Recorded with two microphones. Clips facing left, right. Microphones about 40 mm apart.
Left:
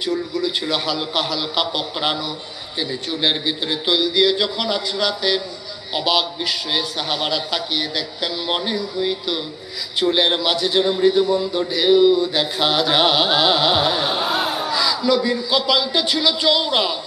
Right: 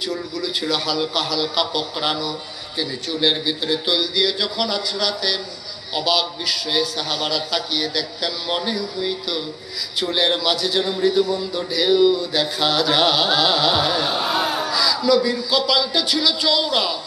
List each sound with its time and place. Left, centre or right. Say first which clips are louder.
0.0 s a man's voice: left 4 dB; left